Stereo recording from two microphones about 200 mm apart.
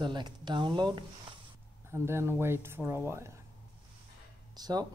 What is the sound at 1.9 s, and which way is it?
Speech, 10° right (ahead or behind).